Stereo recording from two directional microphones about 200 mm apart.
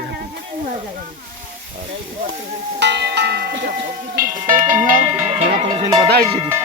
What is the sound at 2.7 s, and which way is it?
Speech, 60° right (ahead or behind).